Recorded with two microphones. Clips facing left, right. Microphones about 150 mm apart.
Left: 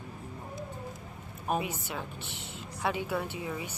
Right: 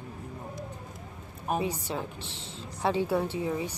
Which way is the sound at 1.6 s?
30° right (ahead or behind).